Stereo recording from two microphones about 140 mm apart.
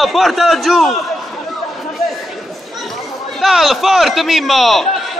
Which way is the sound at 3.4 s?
Centre (ahead or behind).